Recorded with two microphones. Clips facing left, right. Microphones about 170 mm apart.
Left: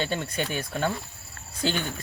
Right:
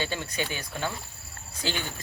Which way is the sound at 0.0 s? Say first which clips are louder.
Left 3 dB; 50° left (ahead or behind).